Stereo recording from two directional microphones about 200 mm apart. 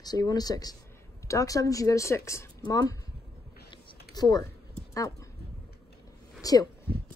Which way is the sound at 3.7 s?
20° left (ahead or behind).